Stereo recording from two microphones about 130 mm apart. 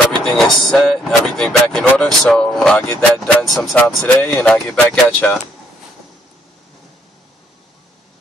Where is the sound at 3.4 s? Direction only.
Centre (ahead or behind).